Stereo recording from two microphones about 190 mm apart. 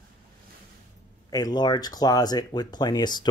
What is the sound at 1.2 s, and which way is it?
Speech, 20° left (ahead or behind).